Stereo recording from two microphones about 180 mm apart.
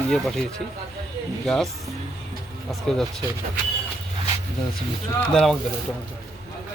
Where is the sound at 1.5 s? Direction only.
Centre (ahead or behind).